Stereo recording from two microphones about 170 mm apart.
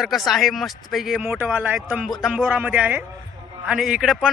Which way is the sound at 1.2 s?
10° right (ahead or behind).